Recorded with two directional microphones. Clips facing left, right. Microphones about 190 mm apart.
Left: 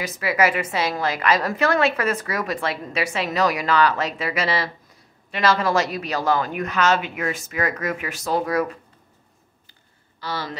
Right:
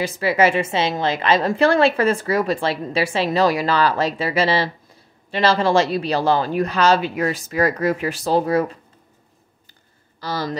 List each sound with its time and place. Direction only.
0.0 s a woman's voice: 30° right (ahead or behind)
10.2 s a man's voice: 40° right (ahead or behind)